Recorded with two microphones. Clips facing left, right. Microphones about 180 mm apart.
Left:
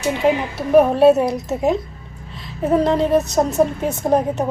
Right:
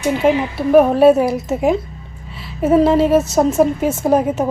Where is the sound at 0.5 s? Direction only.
Centre (ahead or behind).